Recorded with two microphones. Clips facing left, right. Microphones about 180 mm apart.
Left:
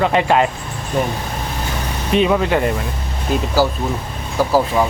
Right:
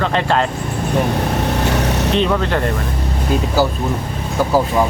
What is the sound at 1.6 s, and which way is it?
Vehicle, 70° right (ahead or behind).